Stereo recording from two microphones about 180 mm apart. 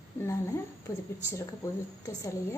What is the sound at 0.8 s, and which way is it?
A woman's voice, 15° left (ahead or behind).